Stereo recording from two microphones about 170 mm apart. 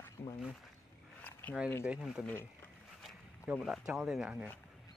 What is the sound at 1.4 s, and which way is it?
Speech, 10° left (ahead or behind).